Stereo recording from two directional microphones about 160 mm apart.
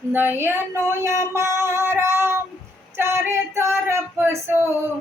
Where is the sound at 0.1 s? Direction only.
10° right (ahead or behind).